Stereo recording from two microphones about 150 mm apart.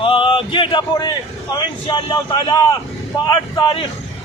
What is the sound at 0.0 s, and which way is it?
A man's voice, 35° left (ahead or behind).